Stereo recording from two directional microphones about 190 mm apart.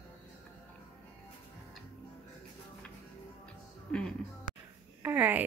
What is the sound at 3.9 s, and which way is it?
Music, 5° left (ahead or behind).